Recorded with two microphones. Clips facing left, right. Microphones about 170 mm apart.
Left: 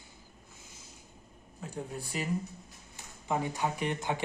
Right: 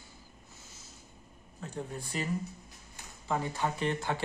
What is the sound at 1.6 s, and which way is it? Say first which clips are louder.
Speech: even; 10° left (ahead or behind).